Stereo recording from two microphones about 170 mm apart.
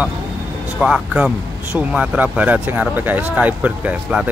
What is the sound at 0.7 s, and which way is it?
Speech, 5° right (ahead or behind).